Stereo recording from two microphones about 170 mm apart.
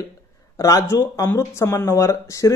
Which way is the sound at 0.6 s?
20° left (ahead or behind).